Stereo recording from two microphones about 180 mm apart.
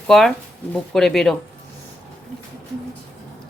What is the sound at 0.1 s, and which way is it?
Speech, centre (ahead or behind).